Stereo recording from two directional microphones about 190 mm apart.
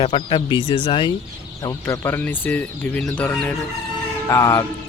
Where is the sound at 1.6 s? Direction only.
15° left (ahead or behind).